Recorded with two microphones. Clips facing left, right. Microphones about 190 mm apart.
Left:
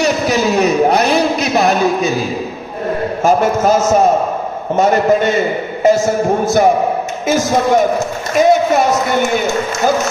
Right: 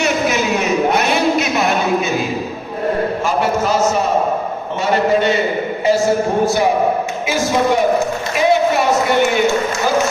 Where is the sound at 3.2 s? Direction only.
45° left (ahead or behind).